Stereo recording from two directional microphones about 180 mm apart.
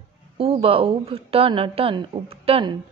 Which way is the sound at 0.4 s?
30° right (ahead or behind).